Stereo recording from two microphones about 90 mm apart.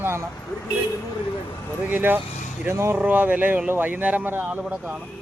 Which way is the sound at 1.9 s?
20° right (ahead or behind).